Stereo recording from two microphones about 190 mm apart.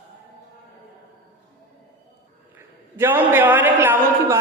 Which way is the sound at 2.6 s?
10° right (ahead or behind).